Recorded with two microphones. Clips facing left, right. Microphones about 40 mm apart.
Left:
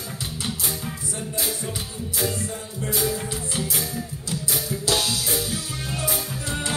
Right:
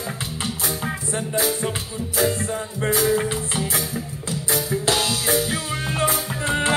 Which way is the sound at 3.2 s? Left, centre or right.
Right.